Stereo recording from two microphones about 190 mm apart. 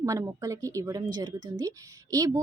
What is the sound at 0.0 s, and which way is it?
A woman's voice, 15° right (ahead or behind).